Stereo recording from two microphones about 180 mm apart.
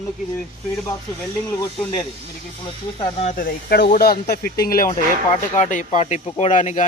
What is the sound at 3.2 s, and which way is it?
Speech, 45° left (ahead or behind).